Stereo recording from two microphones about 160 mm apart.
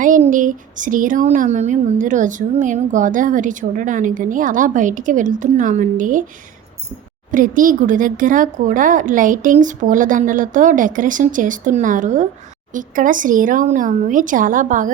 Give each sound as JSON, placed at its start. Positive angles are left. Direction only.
{"t": 0.0, "sound": "speech", "side_deg": -55}
{"t": 7.3, "sound": "speech", "side_deg": -55}